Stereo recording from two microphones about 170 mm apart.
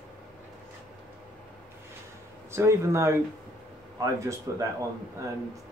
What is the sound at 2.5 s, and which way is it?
Speech, 15° right (ahead or behind).